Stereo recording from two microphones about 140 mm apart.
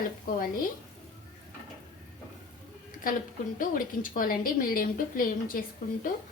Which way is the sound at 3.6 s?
85° left.